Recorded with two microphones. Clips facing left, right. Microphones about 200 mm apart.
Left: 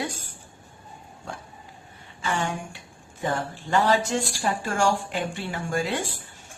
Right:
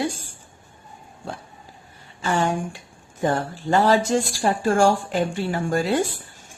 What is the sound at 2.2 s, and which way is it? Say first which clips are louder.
A woman's voice: right 6 dB; 40° right (ahead or behind).